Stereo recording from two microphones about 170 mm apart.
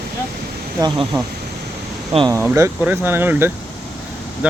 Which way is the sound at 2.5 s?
15° right (ahead or behind).